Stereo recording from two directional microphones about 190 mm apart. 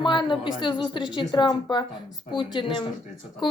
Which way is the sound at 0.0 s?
25° left (ahead or behind).